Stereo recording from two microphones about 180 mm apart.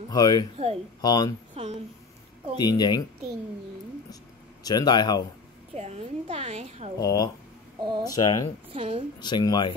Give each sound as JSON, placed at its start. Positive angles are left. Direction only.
{"t": 0.1, "sound": "speech", "side_deg": 20}
{"t": 1.5, "sound": "a sound", "side_deg": -40}
{"t": 2.5, "sound": "speech", "side_deg": 25}
{"t": 4.6, "sound": "speech", "side_deg": 20}
{"t": 5.8, "sound": "a woman's voice", "side_deg": -35}
{"t": 7.0, "sound": "speech", "side_deg": 20}
{"t": 7.8, "sound": "speech", "side_deg": -25}
{"t": 8.1, "sound": "speech", "side_deg": 20}
{"t": 8.7, "sound": "a woman's voice", "side_deg": -30}
{"t": 9.2, "sound": "speech", "side_deg": 25}